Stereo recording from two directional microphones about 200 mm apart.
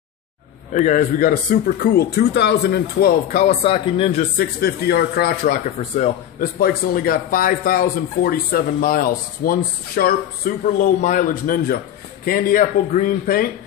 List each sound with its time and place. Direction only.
0.7 s speech: 40° left (ahead or behind)
3.6 s speech: 30° left (ahead or behind)
4.4 s speech: 50° left (ahead or behind)
5.8 s speech: 35° left (ahead or behind)